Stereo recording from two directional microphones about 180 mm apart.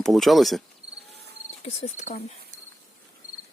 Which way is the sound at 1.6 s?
40° left (ahead or behind).